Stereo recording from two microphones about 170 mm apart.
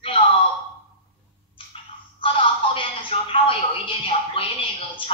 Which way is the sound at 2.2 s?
30° left (ahead or behind).